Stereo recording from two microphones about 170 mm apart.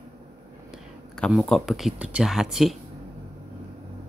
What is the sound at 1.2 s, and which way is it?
Speech, centre (ahead or behind).